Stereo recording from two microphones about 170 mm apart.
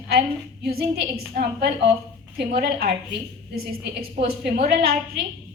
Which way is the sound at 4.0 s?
65° right (ahead or behind).